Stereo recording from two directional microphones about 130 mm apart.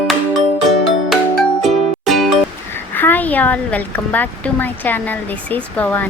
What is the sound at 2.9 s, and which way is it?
Speech, 15° left (ahead or behind).